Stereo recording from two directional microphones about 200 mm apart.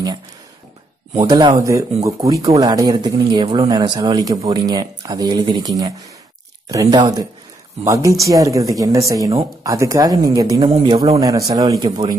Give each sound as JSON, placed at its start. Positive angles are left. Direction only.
{"t": 1.1, "sound": "speech", "side_deg": -20}
{"t": 6.7, "sound": "speech", "side_deg": -20}